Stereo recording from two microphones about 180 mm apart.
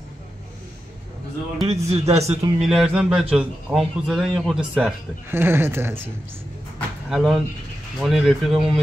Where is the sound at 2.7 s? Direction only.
5° right (ahead or behind).